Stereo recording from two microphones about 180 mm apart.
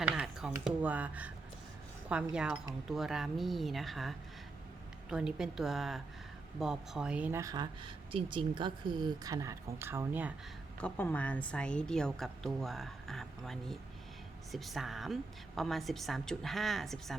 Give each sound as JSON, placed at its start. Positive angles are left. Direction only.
{"t": 0.0, "sound": "computer keyboard", "side_deg": -5}
{"t": 0.6, "sound": "speech", "side_deg": -10}
{"t": 2.3, "sound": "a woman's voice", "side_deg": -5}
{"t": 10.8, "sound": "a woman's voice", "side_deg": 10}